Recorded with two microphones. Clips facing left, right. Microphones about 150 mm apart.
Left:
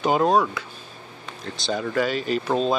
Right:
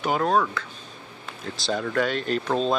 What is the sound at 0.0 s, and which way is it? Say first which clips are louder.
Speech: left 3 dB; 20° left (ahead or behind).